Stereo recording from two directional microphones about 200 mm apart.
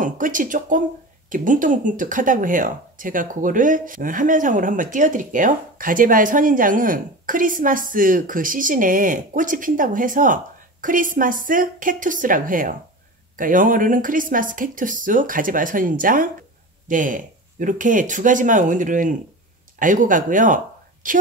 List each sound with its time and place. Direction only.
0.0 s speech: 40° right (ahead or behind)